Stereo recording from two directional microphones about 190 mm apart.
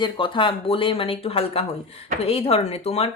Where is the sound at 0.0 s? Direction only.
25° left (ahead or behind).